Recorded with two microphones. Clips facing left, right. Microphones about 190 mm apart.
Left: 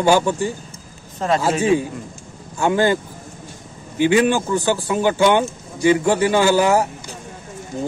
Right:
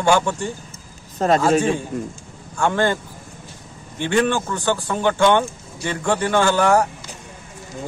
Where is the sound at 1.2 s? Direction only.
40° right (ahead or behind).